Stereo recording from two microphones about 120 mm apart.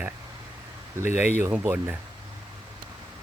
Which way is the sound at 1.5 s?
15° right (ahead or behind).